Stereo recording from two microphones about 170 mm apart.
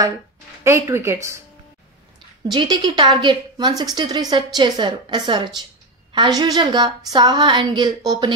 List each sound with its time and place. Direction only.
0.7 s speech: 15° right (ahead or behind)
2.5 s a woman's voice: 25° right (ahead or behind)